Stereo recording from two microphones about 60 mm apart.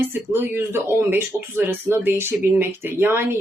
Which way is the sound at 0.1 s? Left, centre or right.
Right.